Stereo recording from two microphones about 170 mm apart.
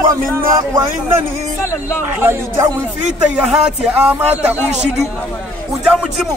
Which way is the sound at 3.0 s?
45° right (ahead or behind).